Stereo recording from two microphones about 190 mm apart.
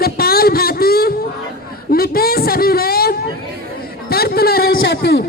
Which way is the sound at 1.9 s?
50° left (ahead or behind).